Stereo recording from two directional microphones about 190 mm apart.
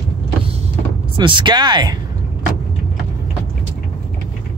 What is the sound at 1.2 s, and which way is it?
Speech, 25° right (ahead or behind).